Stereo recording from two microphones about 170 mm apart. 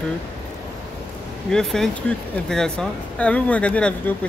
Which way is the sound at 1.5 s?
5° left (ahead or behind).